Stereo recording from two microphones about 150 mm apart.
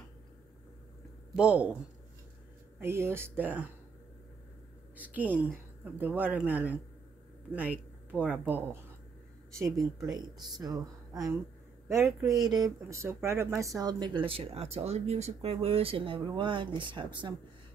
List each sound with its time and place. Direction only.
1.3 s a woman's voice: 10° right (ahead or behind)
2.8 s a woman's voice: 15° right (ahead or behind)
4.9 s a woman's voice: 10° right (ahead or behind)
9.8 s speech: 25° right (ahead or behind)